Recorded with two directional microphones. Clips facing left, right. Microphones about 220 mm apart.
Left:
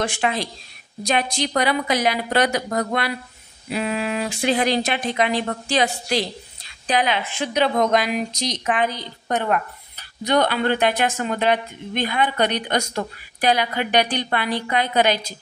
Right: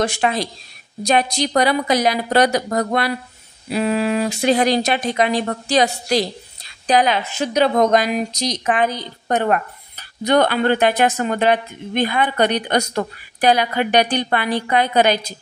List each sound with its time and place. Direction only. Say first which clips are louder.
0.0 s a woman's voice: right 4 dB; 40° right (ahead or behind)